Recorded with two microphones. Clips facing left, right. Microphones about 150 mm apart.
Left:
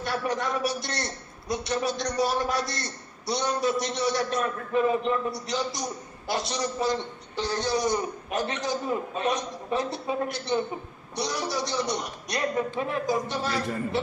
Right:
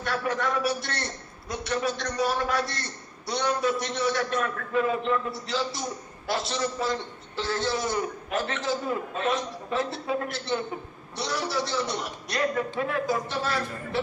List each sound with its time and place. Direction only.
0.1 s a man's voice: 20° left (ahead or behind)